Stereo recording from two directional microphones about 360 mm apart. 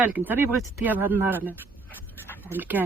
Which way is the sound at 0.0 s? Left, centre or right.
Centre.